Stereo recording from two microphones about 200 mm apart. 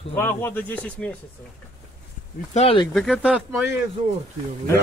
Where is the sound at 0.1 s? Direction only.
10° left (ahead or behind).